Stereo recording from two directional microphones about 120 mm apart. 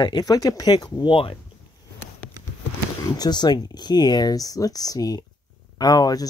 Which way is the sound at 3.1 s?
35° left (ahead or behind).